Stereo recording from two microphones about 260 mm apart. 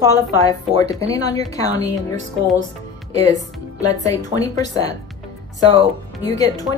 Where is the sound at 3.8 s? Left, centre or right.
Centre.